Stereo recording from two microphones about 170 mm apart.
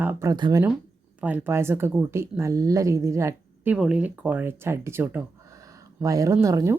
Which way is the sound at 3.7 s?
5° right (ahead or behind).